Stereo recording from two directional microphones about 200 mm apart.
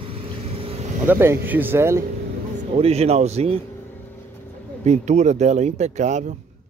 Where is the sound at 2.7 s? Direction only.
30° right (ahead or behind).